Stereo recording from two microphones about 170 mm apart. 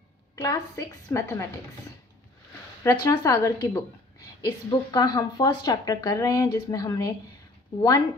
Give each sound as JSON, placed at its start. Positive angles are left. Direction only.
{"t": 0.4, "sound": "a woman's voice", "side_deg": 20}
{"t": 2.8, "sound": "a woman's voice", "side_deg": 20}